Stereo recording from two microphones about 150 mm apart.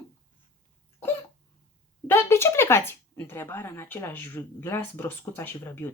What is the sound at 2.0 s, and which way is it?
Speech, 15° left (ahead or behind).